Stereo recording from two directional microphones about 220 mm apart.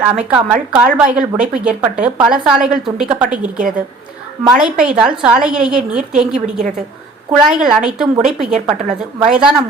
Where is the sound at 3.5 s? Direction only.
35° right (ahead or behind).